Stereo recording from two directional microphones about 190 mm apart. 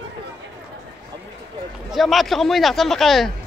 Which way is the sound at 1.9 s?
Centre (ahead or behind).